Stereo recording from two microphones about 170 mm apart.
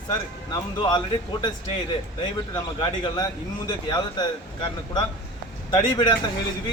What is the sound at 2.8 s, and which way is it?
Speech, 25° left (ahead or behind).